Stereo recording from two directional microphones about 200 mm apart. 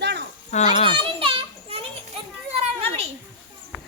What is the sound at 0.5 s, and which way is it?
Speech, 35° left (ahead or behind).